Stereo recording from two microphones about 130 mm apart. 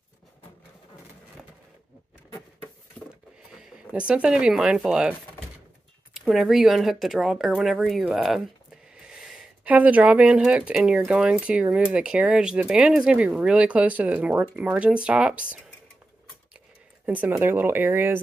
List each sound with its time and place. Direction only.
3.5 s speech: 5° right (ahead or behind)
6.1 s speech: centre (ahead or behind)
17.0 s speech: 15° right (ahead or behind)